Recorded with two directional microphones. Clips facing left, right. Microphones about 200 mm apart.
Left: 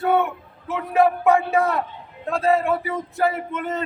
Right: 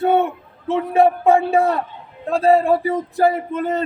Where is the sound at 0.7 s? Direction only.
30° right (ahead or behind).